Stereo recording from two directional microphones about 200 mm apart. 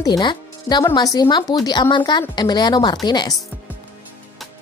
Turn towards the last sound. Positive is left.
turn(degrees=20)  # may be behind; listen again after turning